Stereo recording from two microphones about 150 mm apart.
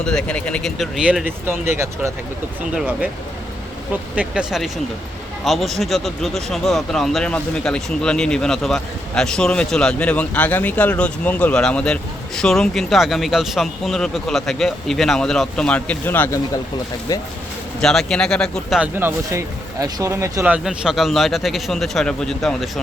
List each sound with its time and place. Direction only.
0.0 s speech: 5° left (ahead or behind); by 2.1 s 15° right (ahead or behind)
4.1 s speech: 5° right (ahead or behind); by 16.4 s 10° left (ahead or behind)
17.1 s speech: 25° left (ahead or behind)
17.7 s speech: 5° left (ahead or behind)
18.8 s speech: 15° right (ahead or behind); by 22.8 s centre (ahead or behind)